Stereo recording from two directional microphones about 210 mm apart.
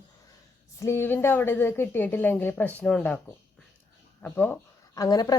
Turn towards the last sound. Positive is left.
turn(degrees=20)  # may be behind; listen again after turning